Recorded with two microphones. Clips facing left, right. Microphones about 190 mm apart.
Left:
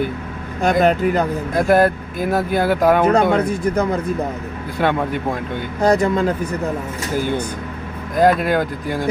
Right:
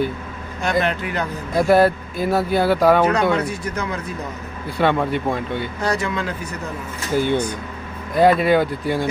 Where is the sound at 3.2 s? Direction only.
55° left (ahead or behind).